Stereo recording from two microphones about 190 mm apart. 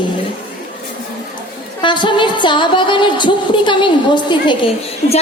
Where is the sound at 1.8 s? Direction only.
25° left (ahead or behind).